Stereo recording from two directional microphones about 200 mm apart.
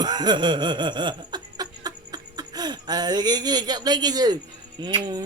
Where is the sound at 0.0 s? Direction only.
20° right (ahead or behind).